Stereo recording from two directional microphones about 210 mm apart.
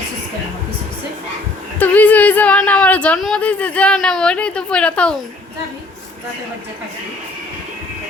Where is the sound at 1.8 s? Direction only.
10° left (ahead or behind).